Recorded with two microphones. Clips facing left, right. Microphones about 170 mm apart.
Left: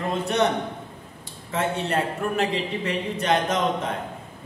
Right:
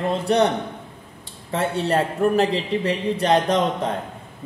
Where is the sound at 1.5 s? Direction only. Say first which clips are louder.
Right 3 dB; 35° right (ahead or behind).